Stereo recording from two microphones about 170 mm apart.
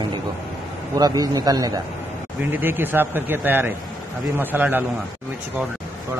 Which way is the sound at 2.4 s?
10° right (ahead or behind).